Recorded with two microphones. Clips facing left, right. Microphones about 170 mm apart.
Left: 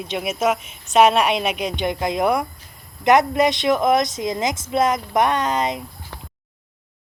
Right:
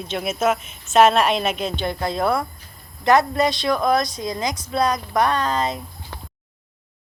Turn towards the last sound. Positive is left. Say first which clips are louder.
# left 1 dB
turn(degrees=20)  # may be behind; listen again after turning